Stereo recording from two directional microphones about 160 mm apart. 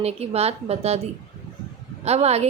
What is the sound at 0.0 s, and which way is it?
Speech, 40° right (ahead or behind).